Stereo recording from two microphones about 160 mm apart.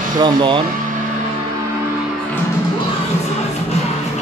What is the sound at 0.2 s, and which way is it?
Speech, 30° right (ahead or behind).